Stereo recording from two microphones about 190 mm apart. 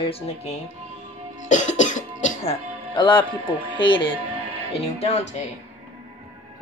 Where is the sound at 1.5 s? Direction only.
40° left (ahead or behind).